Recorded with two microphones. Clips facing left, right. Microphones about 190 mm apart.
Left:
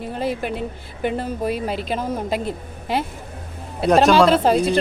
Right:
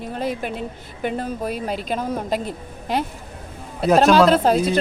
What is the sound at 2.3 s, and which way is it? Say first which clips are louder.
Speech: left 1 dB; 45° right (ahead or behind).